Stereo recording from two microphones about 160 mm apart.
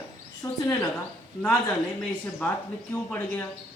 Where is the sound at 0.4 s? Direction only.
20° left (ahead or behind).